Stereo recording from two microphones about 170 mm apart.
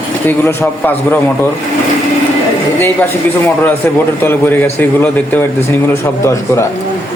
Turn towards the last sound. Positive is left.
turn(degrees=15)  # may be behind; listen again after turning